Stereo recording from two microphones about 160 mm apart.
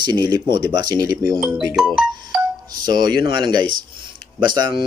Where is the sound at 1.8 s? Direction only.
5° right (ahead or behind).